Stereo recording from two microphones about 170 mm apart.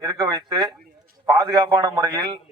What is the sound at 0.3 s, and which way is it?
A man's voice, 20° right (ahead or behind).